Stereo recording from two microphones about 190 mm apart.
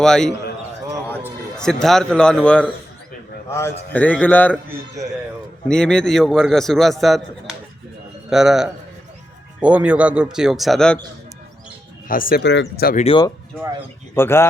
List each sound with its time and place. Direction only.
0.0 s a man's voice: 5° left (ahead or behind)
1.5 s a man's voice: 5° left (ahead or behind)
5.6 s a man's voice: 5° left (ahead or behind)
12.0 s speech: 45° left (ahead or behind)
12.4 s speech: 70° left (ahead or behind)
13.1 s speech: 25° left (ahead or behind)
14.2 s a man's voice: 10° left (ahead or behind)